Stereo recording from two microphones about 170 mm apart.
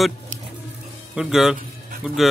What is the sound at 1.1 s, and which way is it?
Speech, centre (ahead or behind).